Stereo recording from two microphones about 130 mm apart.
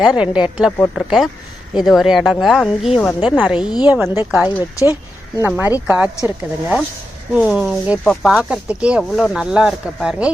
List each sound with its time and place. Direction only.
0.0 s speech: 5° right (ahead or behind)
3.2 s speech: 15° right (ahead or behind)
6.2 s speech: 5° right (ahead or behind)
8.0 s speech: centre (ahead or behind)
8.5 s speech: 10° right (ahead or behind)